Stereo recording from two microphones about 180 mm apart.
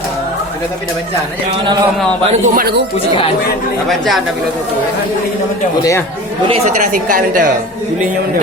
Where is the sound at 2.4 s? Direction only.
55° right (ahead or behind).